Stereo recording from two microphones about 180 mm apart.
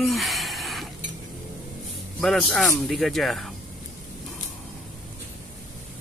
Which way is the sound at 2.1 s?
Centre (ahead or behind).